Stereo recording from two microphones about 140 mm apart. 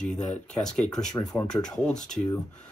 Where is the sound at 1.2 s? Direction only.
30° left (ahead or behind).